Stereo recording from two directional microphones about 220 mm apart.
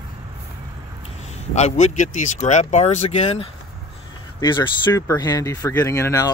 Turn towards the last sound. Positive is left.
turn(degrees=15)  # may be behind; listen again after turning